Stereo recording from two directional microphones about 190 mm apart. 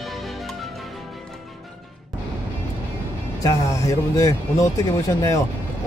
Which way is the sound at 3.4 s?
15° left (ahead or behind).